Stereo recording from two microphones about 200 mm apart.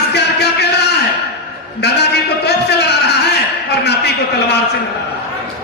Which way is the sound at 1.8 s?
55° left (ahead or behind).